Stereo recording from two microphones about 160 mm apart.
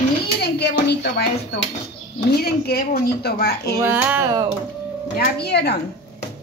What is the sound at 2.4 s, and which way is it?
Speech, 80° left.